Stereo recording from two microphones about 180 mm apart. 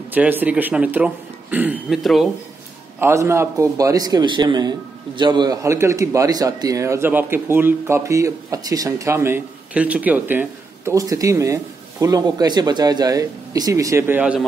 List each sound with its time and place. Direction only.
0.1 s a man's voice: 10° right (ahead or behind)
3.0 s a man's voice: 15° right (ahead or behind)